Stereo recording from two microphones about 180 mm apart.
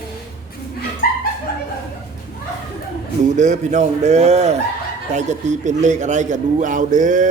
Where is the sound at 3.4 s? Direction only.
40° right (ahead or behind).